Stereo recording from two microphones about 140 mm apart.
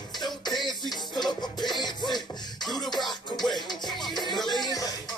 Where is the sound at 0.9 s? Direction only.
Centre (ahead or behind).